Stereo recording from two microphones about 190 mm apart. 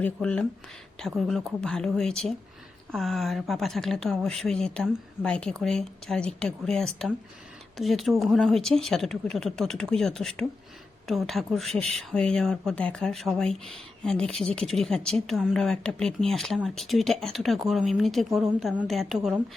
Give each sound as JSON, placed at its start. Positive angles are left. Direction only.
{"t": 0.0, "sound": "a woman's voice", "side_deg": 5}